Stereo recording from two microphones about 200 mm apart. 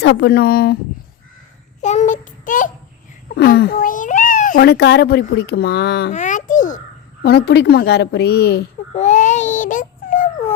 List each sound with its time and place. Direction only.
0.0 s a child's voice: 60° left (ahead or behind)
1.8 s child singing: 35° left (ahead or behind)
3.3 s a child's voice: 55° left (ahead or behind)
4.6 s a child's voice: 55° left (ahead or behind)
6.1 s a child's voice: 40° left (ahead or behind); by 8.6 s 55° left (ahead or behind)
9.0 s speech: 40° left (ahead or behind)